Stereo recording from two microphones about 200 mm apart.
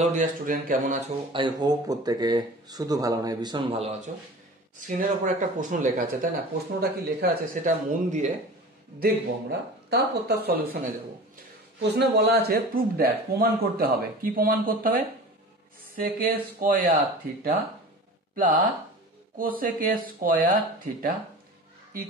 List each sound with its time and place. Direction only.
0.0 s speech: 40° right (ahead or behind)
1.3 s speech: 20° right (ahead or behind)
4.7 s speech: 40° right (ahead or behind)
6.8 s speech: 50° right (ahead or behind)
9.0 s speech: 55° right (ahead or behind)
11.9 s speech: 55° right (ahead or behind)
16.0 s speech: 45° right (ahead or behind)